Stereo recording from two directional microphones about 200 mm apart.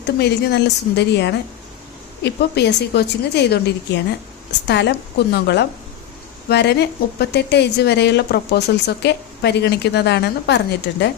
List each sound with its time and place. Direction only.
0.2 s a woman's voice: 55° left (ahead or behind)
4.6 s a woman's voice: 60° left (ahead or behind)